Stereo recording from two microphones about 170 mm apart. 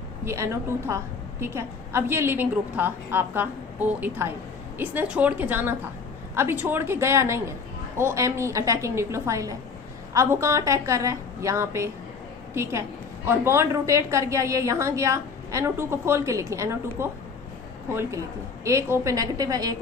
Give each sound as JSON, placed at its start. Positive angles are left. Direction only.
{"t": 0.2, "sound": "a woman's voice", "side_deg": -15}